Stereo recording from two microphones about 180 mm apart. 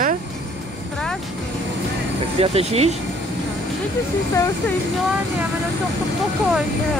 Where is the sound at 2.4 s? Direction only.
35° right (ahead or behind).